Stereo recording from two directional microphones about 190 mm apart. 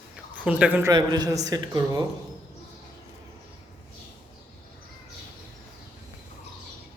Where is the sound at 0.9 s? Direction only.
20° right (ahead or behind).